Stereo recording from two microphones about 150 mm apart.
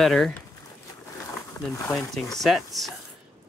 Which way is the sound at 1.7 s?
20° left (ahead or behind).